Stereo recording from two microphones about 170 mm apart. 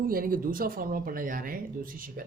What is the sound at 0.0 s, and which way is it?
Speech, 60° right (ahead or behind).